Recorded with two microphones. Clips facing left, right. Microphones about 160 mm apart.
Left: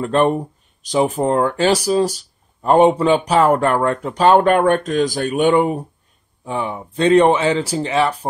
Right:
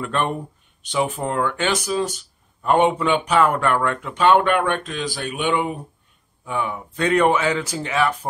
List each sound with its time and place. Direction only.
0.0 s speech: 35° left (ahead or behind)
6.4 s speech: 30° left (ahead or behind)